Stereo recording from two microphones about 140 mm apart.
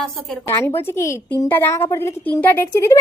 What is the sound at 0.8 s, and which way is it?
A woman's voice, 20° left (ahead or behind).